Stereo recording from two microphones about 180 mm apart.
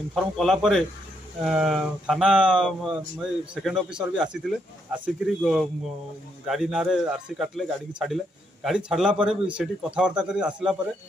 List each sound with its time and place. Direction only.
0.1 s a man's voice: centre (ahead or behind)